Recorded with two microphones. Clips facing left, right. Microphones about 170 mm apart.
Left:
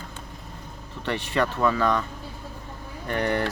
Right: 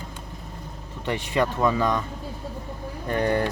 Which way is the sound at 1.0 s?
15° right (ahead or behind).